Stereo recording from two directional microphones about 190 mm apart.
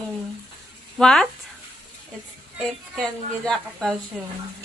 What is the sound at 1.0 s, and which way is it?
Speech, 5° left (ahead or behind).